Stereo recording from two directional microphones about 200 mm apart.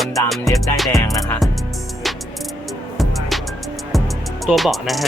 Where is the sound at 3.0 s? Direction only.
Centre (ahead or behind).